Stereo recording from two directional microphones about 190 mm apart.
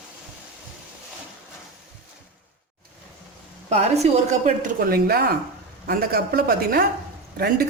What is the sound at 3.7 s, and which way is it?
Speech, 35° right (ahead or behind).